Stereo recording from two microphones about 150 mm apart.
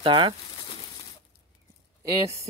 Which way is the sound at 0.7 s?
35° left (ahead or behind).